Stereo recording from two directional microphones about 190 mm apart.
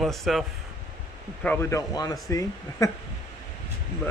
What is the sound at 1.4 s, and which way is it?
Speech, 10° left (ahead or behind).